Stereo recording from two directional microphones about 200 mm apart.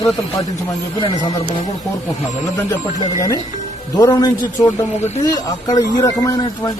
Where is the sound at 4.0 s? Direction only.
20° left (ahead or behind).